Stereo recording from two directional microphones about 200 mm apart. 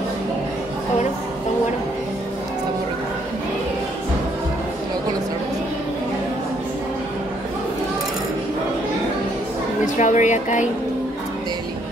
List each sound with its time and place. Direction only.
9.9 s speech: 40° left (ahead or behind)